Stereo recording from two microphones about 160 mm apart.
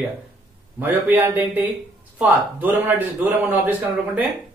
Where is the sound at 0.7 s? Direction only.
10° right (ahead or behind).